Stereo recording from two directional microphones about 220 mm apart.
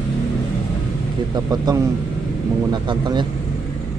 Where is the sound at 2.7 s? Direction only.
20° right (ahead or behind).